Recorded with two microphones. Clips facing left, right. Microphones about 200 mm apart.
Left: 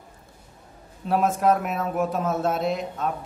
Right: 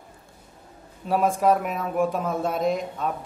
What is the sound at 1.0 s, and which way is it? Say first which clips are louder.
A man's voice: even; centre (ahead or behind).